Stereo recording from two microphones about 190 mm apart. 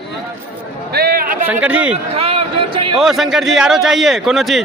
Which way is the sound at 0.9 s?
55° right (ahead or behind).